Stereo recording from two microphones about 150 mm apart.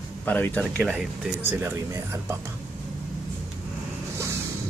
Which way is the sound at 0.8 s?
5° right (ahead or behind).